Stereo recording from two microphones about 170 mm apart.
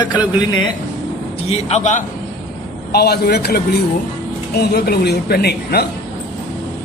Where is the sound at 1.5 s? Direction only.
40° left (ahead or behind).